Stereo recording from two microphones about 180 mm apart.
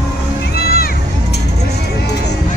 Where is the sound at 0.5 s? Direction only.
60° left (ahead or behind).